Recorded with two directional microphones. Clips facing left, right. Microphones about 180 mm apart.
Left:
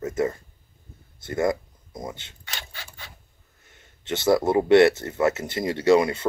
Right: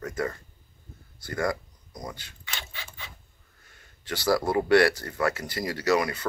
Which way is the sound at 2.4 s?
45° left (ahead or behind).